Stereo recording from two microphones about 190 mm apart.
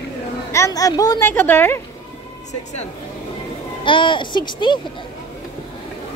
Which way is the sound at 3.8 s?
25° left (ahead or behind).